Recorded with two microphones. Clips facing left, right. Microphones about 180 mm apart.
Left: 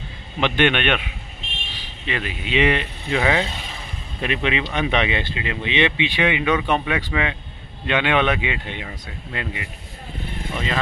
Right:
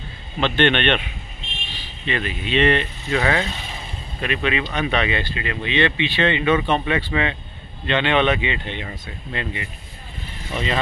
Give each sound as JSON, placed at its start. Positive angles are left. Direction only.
{"t": 0.4, "sound": "speech", "side_deg": 10}
{"t": 2.0, "sound": "speech", "side_deg": 10}
{"t": 4.2, "sound": "speech", "side_deg": 20}